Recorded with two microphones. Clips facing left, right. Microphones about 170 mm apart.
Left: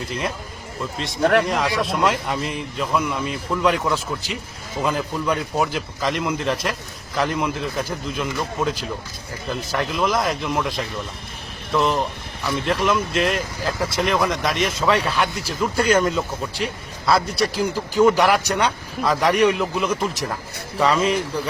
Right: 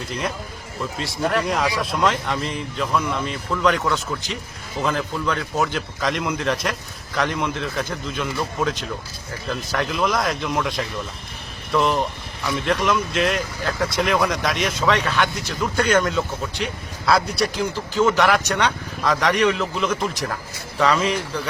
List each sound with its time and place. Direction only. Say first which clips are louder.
0.1 s speech: right 1 dB; centre (ahead or behind)
1.2 s speech: left 5 dB; 60° left (ahead or behind)
1.5 s speech: left 1 dB; centre (ahead or behind)